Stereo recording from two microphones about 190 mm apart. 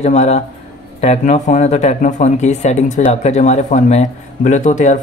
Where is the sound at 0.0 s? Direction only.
35° left (ahead or behind).